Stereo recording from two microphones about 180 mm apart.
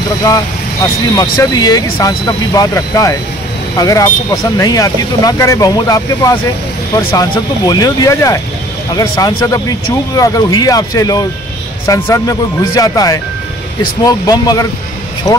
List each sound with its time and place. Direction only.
0.8 s speech: 20° left (ahead or behind)